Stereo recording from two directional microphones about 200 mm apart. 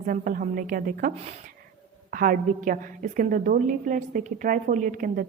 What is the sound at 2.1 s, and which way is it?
A woman's voice, 45° right (ahead or behind).